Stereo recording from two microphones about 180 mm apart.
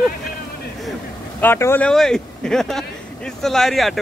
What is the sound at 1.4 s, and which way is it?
Speech, 15° left (ahead or behind).